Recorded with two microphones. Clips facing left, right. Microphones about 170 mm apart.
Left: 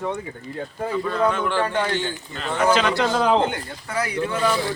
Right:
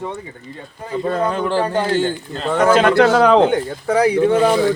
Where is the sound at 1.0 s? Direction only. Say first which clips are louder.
Right 4 dB; 40° right (ahead or behind).